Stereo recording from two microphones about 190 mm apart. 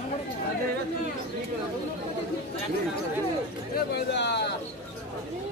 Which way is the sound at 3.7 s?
60° left (ahead or behind).